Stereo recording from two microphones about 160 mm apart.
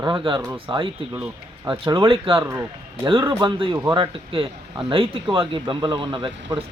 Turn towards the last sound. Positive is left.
turn(degrees=-30)  # may be behind; listen again after turning